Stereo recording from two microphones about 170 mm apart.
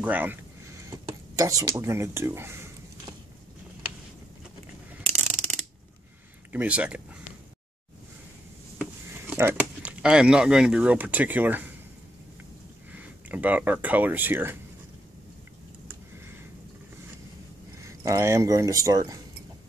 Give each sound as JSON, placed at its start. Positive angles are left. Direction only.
{"t": 0.0, "sound": "a sound", "side_deg": -10}
{"t": 5.2, "sound": "ratchet", "side_deg": 0}
{"t": 6.5, "sound": "speech", "side_deg": -5}
{"t": 9.1, "sound": "speech", "side_deg": -15}
{"t": 12.9, "sound": "speech", "side_deg": -10}
{"t": 17.8, "sound": "speech", "side_deg": -20}